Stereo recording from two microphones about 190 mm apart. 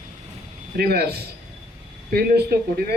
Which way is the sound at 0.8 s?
55° right (ahead or behind).